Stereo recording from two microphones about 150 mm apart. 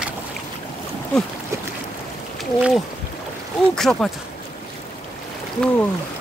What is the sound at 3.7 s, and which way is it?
Speech, 5° left (ahead or behind).